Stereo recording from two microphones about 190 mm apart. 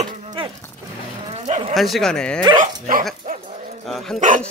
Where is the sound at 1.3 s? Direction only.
35° right (ahead or behind).